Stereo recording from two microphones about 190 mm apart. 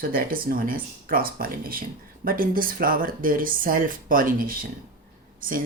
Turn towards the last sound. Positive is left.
turn(degrees=-45)  # may be behind; listen again after turning